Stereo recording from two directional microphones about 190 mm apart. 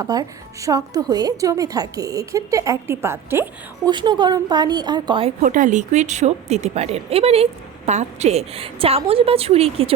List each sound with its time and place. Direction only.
0.0 s a woman's voice: 20° right (ahead or behind)
3.8 s a woman's voice: 25° right (ahead or behind)
5.4 s speech: 45° right (ahead or behind)